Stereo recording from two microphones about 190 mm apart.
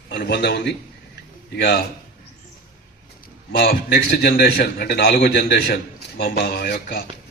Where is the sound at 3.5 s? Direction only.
55° left (ahead or behind).